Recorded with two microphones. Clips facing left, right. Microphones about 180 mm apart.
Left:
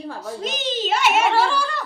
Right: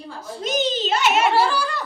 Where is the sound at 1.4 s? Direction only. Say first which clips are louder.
Right 1 dB; 5° right (ahead or behind).